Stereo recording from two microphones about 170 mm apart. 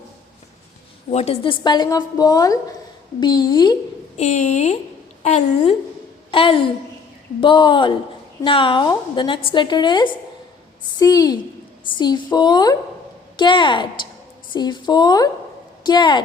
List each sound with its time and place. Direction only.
1.1 s a woman's voice: 35° left (ahead or behind)
4.2 s a woman's voice: 45° left (ahead or behind); by 16.2 s 25° left (ahead or behind)